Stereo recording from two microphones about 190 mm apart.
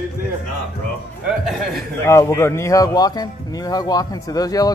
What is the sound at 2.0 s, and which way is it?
Speech, 15° left (ahead or behind).